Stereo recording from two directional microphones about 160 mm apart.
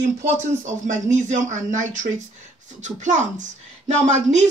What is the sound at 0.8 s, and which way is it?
A woman's voice, 50° right (ahead or behind).